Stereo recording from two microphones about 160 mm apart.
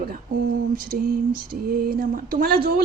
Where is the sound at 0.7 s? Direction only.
60° right (ahead or behind).